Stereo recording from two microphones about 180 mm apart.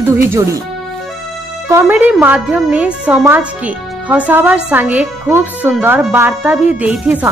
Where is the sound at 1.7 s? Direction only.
10° right (ahead or behind).